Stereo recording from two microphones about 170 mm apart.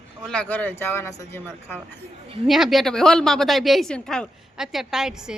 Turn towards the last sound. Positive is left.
turn(degrees=-5)  # may be behind; listen again after turning